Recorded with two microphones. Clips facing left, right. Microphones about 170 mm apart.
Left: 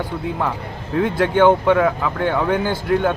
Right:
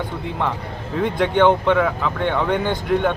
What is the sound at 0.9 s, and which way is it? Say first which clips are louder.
Speech: left 2 dB; 5° left (ahead or behind).